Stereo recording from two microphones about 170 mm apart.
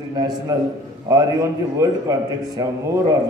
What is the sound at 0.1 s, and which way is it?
A man's voice, 20° right (ahead or behind).